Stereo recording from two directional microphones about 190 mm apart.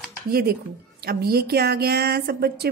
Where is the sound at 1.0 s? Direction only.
55° right (ahead or behind).